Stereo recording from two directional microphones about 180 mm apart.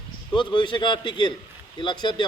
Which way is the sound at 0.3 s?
25° left (ahead or behind).